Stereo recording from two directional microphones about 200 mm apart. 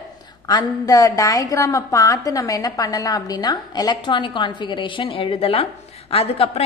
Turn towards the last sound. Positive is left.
turn(degrees=30)  # may be behind; listen again after turning